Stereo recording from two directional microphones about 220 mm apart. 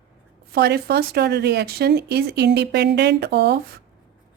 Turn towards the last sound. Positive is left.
turn(degrees=-45)  # may be behind; listen again after turning